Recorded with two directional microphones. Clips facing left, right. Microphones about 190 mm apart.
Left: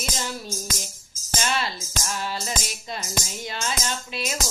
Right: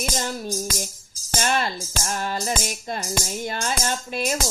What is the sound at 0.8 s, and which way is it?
Music, 50° right (ahead or behind).